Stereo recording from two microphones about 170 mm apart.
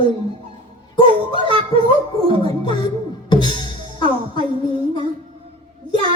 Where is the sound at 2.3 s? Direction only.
35° right (ahead or behind).